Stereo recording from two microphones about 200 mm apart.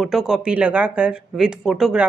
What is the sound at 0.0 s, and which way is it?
Speech, centre (ahead or behind).